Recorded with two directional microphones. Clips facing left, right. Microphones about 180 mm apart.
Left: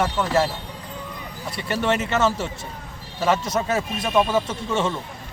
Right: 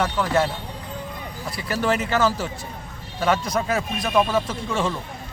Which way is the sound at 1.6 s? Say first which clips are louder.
Even; 5° right (ahead or behind).